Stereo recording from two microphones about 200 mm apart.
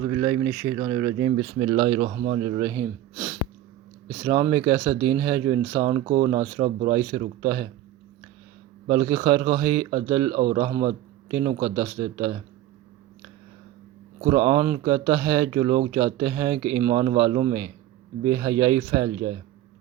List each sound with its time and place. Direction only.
0.1 s speech: 15° right (ahead or behind)
2.0 s speech: 35° right (ahead or behind); by 2.8 s 15° right (ahead or behind)
4.2 s speech: 15° right (ahead or behind)
5.8 s speech: 30° right (ahead or behind)
6.9 s speech: 20° right (ahead or behind)
8.9 s speech: 20° right (ahead or behind)
10.3 s a man's voice: 30° right (ahead or behind)
14.2 s speech: 25° right (ahead or behind)